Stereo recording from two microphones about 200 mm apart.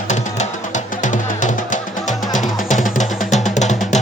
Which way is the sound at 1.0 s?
40° left (ahead or behind).